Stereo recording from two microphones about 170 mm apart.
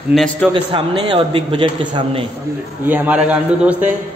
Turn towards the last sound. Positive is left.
turn(degrees=-10)  # may be behind; listen again after turning